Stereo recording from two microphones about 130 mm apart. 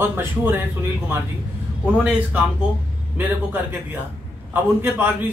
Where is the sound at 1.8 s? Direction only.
10° right (ahead or behind).